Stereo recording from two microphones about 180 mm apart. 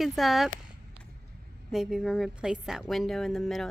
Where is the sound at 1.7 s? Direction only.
Centre (ahead or behind).